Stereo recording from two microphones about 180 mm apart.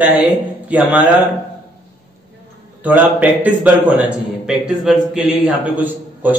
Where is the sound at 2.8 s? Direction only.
10° right (ahead or behind).